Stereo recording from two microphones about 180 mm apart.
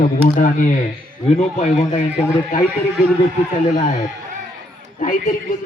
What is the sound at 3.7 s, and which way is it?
A man's voice, 45° left (ahead or behind).